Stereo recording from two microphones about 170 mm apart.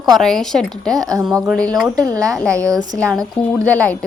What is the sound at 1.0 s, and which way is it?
Speech, 20° right (ahead or behind).